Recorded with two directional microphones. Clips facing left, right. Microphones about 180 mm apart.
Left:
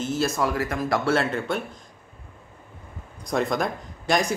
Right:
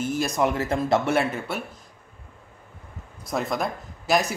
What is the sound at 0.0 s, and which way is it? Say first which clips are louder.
Speech: right 1 dB; 15° right (ahead or behind).